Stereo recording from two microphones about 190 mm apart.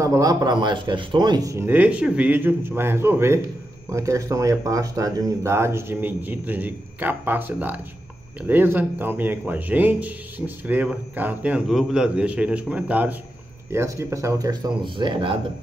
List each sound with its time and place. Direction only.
0.0 s speech: 15° right (ahead or behind)